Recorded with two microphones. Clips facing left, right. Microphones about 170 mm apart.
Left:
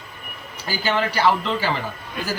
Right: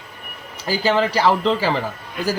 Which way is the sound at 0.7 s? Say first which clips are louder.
Right 5 dB; 30° right (ahead or behind).